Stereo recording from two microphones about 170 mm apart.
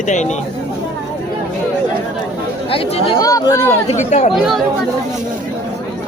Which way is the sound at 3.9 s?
40° left (ahead or behind).